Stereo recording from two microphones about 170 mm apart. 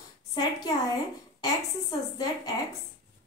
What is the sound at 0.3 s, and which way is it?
A woman's voice, 20° left (ahead or behind).